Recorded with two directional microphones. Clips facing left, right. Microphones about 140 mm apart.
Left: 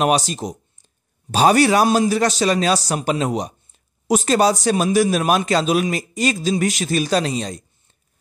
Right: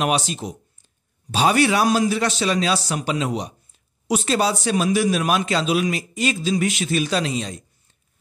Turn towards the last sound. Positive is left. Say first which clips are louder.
# left 3 dB
turn(degrees=40)  # may be behind; listen again after turning